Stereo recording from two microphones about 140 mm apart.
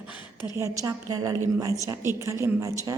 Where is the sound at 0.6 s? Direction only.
25° right (ahead or behind).